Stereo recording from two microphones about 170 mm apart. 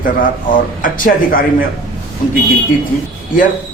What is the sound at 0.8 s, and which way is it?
Speech, 55° left (ahead or behind).